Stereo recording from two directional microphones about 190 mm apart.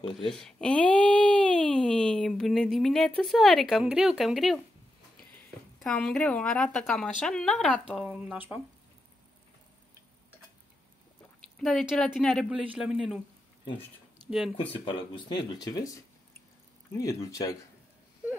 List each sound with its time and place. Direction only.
0.1 s speech: 5° left (ahead or behind)
5.8 s speech: 5° left (ahead or behind)
11.5 s speech: centre (ahead or behind)
15.2 s speech: 20° left (ahead or behind)